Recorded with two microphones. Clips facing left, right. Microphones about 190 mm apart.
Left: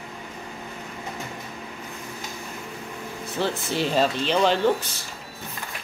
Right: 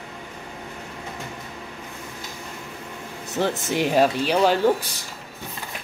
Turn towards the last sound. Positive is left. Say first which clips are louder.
# right 2 dB
turn(degrees=-10)  # may be behind; listen again after turning